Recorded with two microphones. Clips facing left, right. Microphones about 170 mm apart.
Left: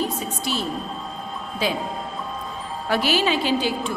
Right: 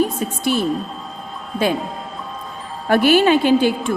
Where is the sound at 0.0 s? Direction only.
55° right (ahead or behind).